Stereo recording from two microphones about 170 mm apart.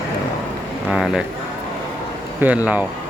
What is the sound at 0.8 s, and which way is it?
Speech, 5° right (ahead or behind).